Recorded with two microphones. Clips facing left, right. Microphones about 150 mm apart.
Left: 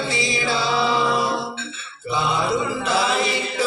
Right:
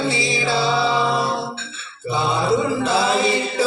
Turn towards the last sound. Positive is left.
turn(degrees=-25)  # may be behind; listen again after turning